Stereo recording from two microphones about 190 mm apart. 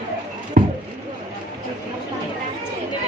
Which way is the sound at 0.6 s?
45° right (ahead or behind).